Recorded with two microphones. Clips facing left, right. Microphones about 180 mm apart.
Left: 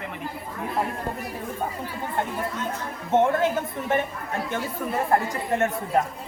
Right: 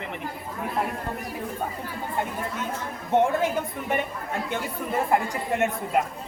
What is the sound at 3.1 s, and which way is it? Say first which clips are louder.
Speech: left 1 dB; 15° right (ahead or behind).